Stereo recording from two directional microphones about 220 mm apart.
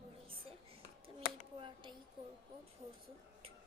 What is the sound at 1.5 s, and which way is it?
Speech, 25° right (ahead or behind).